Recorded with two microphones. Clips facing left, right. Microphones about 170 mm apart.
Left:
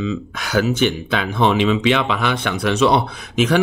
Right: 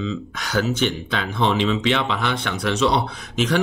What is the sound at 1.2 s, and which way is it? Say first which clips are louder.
Speech: left 4 dB; 60° left (ahead or behind).